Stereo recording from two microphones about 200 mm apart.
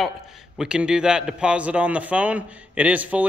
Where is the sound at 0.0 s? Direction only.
Centre (ahead or behind).